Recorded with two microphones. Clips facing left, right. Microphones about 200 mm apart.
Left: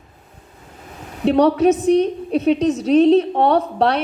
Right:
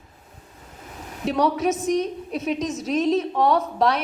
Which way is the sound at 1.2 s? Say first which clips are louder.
Left 8 dB; 30° left (ahead or behind).